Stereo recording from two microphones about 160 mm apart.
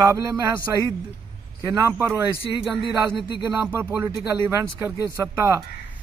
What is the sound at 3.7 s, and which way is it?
A man's voice, 15° right (ahead or behind).